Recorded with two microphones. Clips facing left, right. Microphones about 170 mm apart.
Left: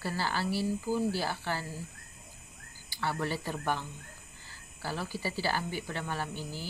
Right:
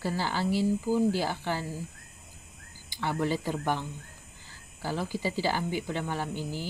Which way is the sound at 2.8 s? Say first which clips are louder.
Right 4 dB; 15° right (ahead or behind).